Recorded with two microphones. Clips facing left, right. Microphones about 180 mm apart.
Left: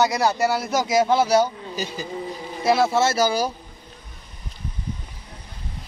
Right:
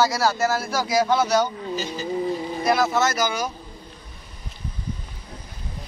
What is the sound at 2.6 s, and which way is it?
Speech, 25° left (ahead or behind).